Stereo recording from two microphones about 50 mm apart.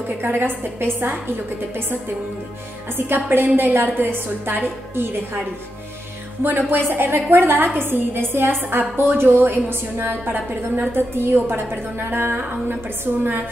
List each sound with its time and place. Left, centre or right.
0.2 s a woman's voice: right
3.4 s a woman's voice: right
6.4 s a woman's voice: right